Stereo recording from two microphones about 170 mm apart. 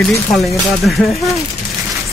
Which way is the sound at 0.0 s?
Centre (ahead or behind).